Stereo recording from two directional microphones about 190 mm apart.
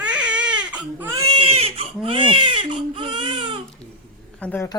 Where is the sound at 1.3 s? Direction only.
30° right (ahead or behind).